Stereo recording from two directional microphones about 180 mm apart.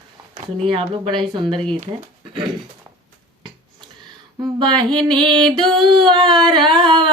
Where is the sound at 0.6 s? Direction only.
30° right (ahead or behind).